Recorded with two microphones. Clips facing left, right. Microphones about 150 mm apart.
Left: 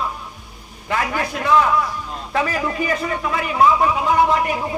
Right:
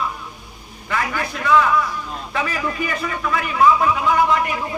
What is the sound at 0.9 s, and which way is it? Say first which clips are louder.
Speech: left 2 dB; 35° left (ahead or behind).